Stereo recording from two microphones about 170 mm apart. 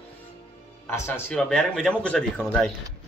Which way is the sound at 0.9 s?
10° left (ahead or behind).